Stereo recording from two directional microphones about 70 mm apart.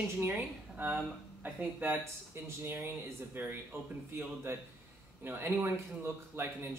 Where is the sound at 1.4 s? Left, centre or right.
Right.